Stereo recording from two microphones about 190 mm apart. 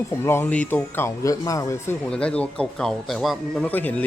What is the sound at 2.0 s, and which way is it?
Speech, 5° left (ahead or behind).